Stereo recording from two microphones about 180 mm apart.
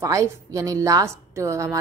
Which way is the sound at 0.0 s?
15° right (ahead or behind).